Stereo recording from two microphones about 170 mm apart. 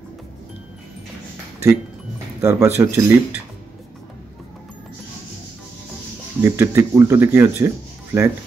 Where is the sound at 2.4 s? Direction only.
15° right (ahead or behind).